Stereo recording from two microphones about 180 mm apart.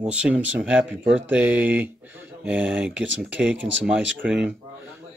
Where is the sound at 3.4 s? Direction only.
5° right (ahead or behind).